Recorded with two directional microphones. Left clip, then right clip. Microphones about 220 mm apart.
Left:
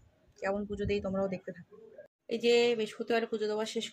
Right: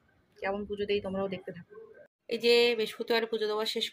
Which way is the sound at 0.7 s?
15° left (ahead or behind).